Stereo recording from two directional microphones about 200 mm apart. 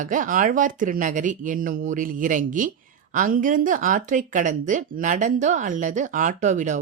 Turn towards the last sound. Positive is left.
turn(degrees=-35)  # may be behind; listen again after turning